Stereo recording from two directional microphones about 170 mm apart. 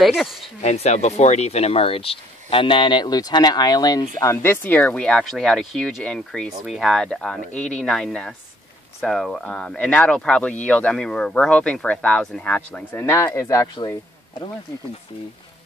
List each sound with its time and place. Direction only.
0.0 s speech: centre (ahead or behind)
0.6 s speech: 40° left (ahead or behind); by 13.7 s 15° left (ahead or behind)